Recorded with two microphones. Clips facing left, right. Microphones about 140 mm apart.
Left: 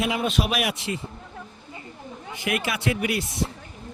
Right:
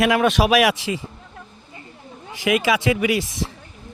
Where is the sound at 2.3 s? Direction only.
90° right.